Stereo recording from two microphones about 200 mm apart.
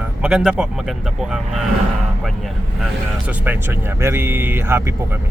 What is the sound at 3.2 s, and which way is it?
Speech, 10° right (ahead or behind).